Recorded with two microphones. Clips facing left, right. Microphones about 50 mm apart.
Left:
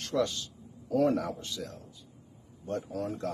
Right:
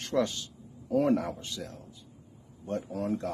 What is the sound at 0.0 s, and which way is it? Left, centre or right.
A man's voice, right.